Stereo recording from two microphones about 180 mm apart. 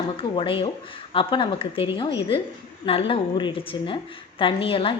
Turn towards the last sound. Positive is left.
turn(degrees=30)  # may be behind; listen again after turning